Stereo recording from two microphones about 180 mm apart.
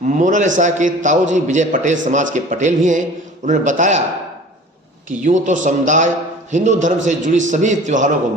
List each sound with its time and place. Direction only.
0.2 s a man's voice: 45° right (ahead or behind)
5.0 s a man's voice: 45° right (ahead or behind)